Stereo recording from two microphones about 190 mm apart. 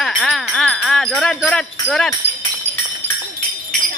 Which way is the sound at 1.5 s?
5° left (ahead or behind).